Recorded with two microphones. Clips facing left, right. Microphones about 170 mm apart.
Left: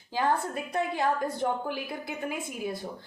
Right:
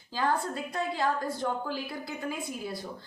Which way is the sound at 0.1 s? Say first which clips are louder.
Left 2 dB; 20° left (ahead or behind).